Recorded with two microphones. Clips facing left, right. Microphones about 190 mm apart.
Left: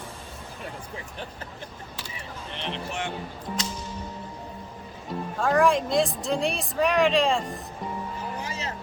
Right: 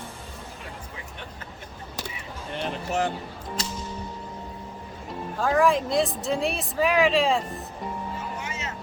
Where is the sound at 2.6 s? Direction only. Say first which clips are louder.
Right 5 dB; 40° right (ahead or behind).